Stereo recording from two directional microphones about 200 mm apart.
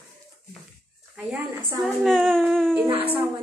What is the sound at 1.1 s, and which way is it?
A woman's voice, centre (ahead or behind).